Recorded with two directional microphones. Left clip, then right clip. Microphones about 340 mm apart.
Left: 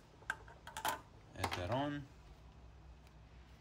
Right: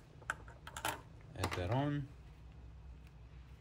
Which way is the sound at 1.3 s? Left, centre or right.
Centre.